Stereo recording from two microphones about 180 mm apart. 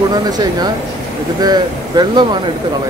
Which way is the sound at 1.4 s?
25° right (ahead or behind).